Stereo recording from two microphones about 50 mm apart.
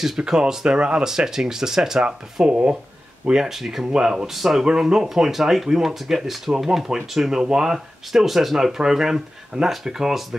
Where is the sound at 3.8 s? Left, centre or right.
Centre.